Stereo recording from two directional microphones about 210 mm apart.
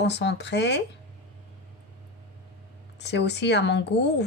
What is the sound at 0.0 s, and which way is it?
Speech, 55° left (ahead or behind).